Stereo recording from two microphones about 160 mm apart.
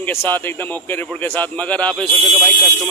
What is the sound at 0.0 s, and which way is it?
A man's voice, 15° left (ahead or behind).